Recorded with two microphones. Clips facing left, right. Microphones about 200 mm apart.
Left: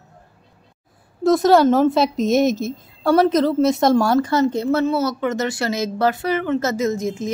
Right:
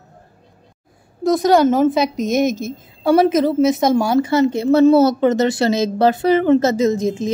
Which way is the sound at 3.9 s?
20° right (ahead or behind).